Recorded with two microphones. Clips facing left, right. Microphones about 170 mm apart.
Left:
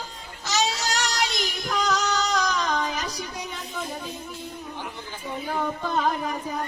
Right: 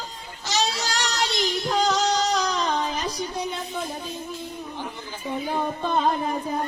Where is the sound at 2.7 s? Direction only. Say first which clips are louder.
Right 1 dB; 30° right (ahead or behind).